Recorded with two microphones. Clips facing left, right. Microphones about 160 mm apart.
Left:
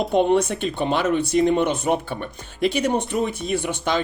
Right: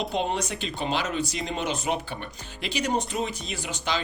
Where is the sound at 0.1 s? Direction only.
55° left (ahead or behind).